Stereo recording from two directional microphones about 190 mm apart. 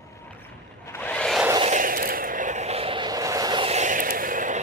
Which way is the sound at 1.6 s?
45° right (ahead or behind).